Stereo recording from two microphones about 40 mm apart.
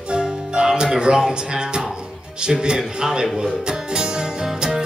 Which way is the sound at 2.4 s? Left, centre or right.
Right.